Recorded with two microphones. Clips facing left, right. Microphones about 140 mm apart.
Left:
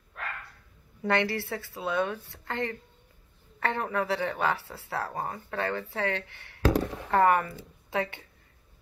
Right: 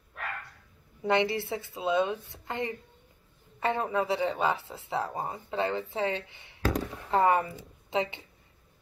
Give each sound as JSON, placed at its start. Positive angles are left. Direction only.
{"t": 1.0, "sound": "speech", "side_deg": -20}